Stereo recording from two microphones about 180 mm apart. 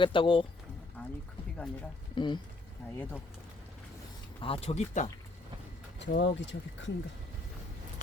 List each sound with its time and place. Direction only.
0.0 s speech: 30° left (ahead or behind)
1.0 s a sound: 5° left (ahead or behind)
2.1 s speech: 25° left (ahead or behind)
4.4 s speech: 30° left (ahead or behind)
6.0 s speech: 75° left (ahead or behind)